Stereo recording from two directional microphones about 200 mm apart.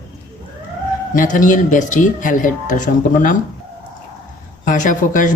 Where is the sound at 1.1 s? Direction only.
40° left (ahead or behind).